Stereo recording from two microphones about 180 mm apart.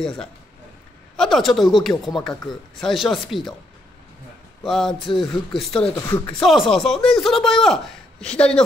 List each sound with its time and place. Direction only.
1.1 s speech: centre (ahead or behind)
4.6 s speech: centre (ahead or behind)
5.9 s speech: 20° left (ahead or behind)
6.4 s speech: centre (ahead or behind)